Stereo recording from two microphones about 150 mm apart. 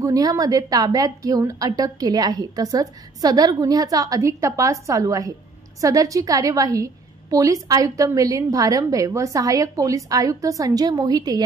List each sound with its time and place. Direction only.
0.0 s a woman's voice: 25° right (ahead or behind)